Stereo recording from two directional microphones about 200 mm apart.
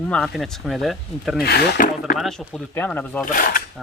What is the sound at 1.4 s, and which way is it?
Speech, 50° left (ahead or behind).